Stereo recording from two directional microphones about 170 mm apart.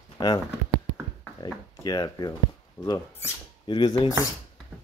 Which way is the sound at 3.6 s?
30° left (ahead or behind).